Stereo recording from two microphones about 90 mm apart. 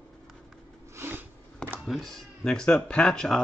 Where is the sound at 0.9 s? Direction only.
25° right (ahead or behind).